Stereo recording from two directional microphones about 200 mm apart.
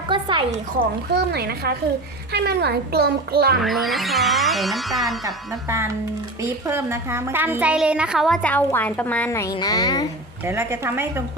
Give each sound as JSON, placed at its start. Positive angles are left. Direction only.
{"t": 0.1, "sound": "a sound", "side_deg": -25}
{"t": 1.1, "sound": "speech", "side_deg": -55}
{"t": 3.6, "sound": "a woman's voice", "side_deg": 0}
{"t": 5.2, "sound": "a woman's voice", "side_deg": -15}
{"t": 10.4, "sound": "a woman's voice", "side_deg": -10}